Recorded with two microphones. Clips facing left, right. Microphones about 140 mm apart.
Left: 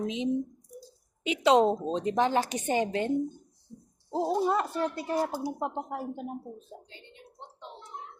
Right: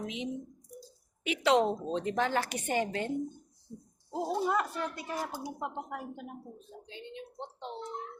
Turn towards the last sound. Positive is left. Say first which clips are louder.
# left 5 dB
turn(degrees=35)  # may be behind; listen again after turning